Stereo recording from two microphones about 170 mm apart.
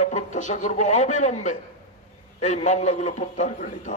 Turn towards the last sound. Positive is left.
turn(degrees=45)  # may be behind; listen again after turning